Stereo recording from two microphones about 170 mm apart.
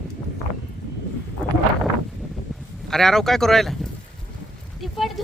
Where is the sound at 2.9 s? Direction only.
Centre (ahead or behind).